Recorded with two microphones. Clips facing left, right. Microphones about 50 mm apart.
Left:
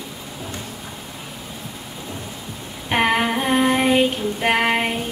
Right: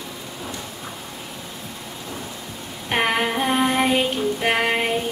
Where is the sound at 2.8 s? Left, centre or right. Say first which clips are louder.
Left 2 dB; centre.